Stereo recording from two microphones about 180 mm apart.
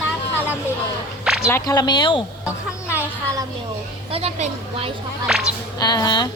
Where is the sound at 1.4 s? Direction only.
15° left (ahead or behind).